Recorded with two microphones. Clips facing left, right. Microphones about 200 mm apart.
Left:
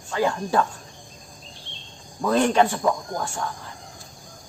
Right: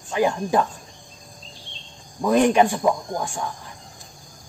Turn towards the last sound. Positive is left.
turn(degrees=-15)  # may be behind; listen again after turning